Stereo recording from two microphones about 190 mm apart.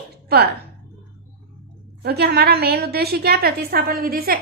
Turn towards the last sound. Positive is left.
turn(degrees=-50)  # may be behind; listen again after turning